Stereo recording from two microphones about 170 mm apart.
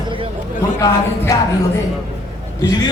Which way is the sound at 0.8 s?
20° left (ahead or behind).